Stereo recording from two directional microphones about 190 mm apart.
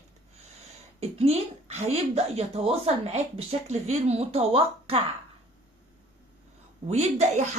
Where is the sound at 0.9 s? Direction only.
35° right (ahead or behind).